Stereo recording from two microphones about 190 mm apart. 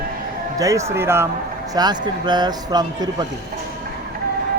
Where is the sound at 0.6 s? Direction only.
15° right (ahead or behind).